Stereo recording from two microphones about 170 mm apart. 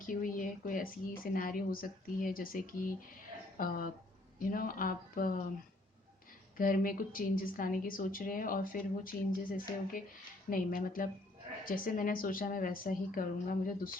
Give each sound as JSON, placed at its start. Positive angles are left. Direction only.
{"t": 0.0, "sound": "a woman's voice", "side_deg": 55}
{"t": 6.6, "sound": "a woman's voice", "side_deg": 55}